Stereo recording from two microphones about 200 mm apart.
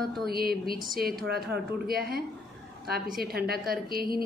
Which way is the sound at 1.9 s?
50° right (ahead or behind).